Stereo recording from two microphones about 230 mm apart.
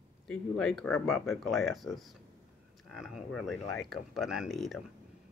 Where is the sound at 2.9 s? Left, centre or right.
Centre.